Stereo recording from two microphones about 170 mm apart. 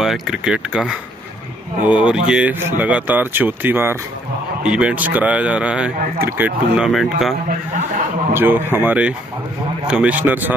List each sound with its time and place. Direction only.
0.0 s speech: centre (ahead or behind)
7.4 s speech: 50° right (ahead or behind)
8.3 s speech: 10° right (ahead or behind)